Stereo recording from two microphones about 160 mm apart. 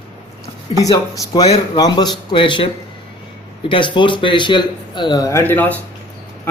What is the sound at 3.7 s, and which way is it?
A man's voice, 30° left (ahead or behind).